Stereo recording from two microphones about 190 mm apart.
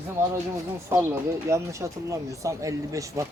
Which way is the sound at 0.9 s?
15° right (ahead or behind).